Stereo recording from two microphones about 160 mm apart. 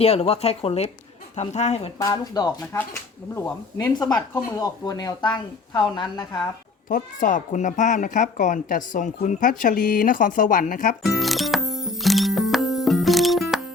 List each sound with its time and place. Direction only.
0.0 s speech: 40° left (ahead or behind)
2.0 s a woman's voice: 20° left (ahead or behind)
6.8 s a woman's voice: 55° left (ahead or behind)
11.0 s music: centre (ahead or behind)